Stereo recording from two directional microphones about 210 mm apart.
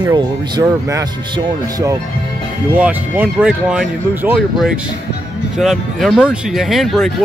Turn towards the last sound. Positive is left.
turn(degrees=0)  # may be behind; listen again after turning